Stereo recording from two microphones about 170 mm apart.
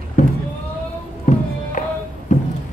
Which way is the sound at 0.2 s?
45° left (ahead or behind).